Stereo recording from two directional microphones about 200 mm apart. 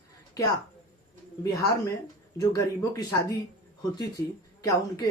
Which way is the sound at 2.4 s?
15° left (ahead or behind).